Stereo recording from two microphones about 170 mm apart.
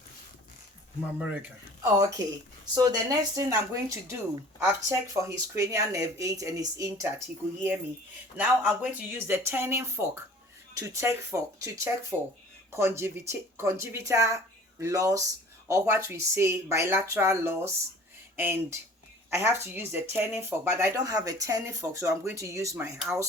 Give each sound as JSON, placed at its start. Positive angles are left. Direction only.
{"t": 1.2, "sound": "speech", "side_deg": -10}
{"t": 8.4, "sound": "speech", "side_deg": -10}
{"t": 23.1, "sound": "speech", "side_deg": -5}